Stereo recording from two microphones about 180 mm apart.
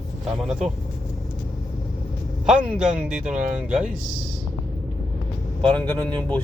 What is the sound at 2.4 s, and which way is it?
Speech, 5° right (ahead or behind).